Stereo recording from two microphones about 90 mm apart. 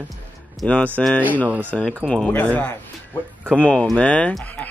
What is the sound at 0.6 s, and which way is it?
Speech, 15° left (ahead or behind).